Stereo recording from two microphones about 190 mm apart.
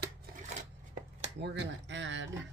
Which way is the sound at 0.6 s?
40° right (ahead or behind).